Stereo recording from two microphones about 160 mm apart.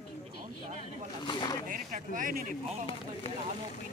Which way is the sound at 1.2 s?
30° left (ahead or behind).